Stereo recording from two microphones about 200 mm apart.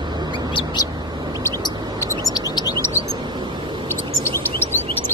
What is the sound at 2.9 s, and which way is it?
Bird, 25° right (ahead or behind).